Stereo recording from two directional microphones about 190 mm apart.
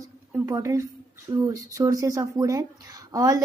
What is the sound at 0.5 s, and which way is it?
A woman's voice, 15° right (ahead or behind).